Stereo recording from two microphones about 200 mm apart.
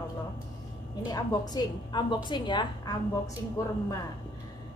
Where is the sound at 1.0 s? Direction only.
20° left (ahead or behind).